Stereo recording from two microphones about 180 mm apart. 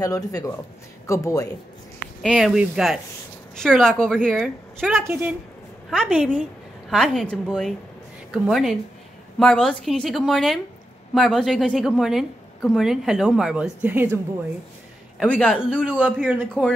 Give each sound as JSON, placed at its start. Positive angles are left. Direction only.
{"t": 0.0, "sound": "speech", "side_deg": 20}
{"t": 2.2, "sound": "a woman's voice", "side_deg": 0}
{"t": 4.9, "sound": "a man's voice", "side_deg": -10}
{"t": 5.9, "sound": "a woman's voice", "side_deg": 0}
{"t": 15.1, "sound": "a woman's voice", "side_deg": 0}
{"t": 15.7, "sound": "a man's voice", "side_deg": -5}